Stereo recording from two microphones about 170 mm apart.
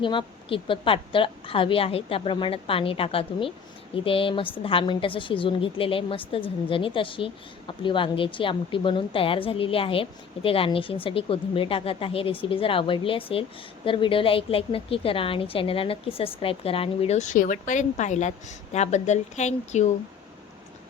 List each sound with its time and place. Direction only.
0.0 s a woman's voice: 30° left (ahead or behind)